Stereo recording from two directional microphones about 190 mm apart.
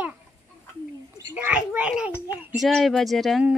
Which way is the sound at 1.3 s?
10° right (ahead or behind).